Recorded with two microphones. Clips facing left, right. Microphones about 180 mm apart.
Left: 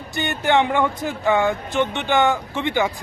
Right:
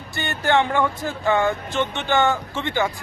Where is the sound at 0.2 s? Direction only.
20° left (ahead or behind).